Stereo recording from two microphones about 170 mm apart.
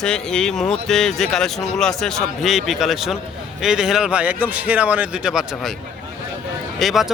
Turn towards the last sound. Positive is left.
turn(degrees=0)  # may be behind; listen again after turning